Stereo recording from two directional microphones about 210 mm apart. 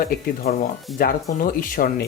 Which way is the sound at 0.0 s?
45° left (ahead or behind).